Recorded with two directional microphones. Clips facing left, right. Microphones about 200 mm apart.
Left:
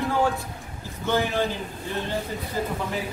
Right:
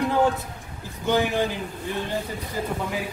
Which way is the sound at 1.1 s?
15° right (ahead or behind).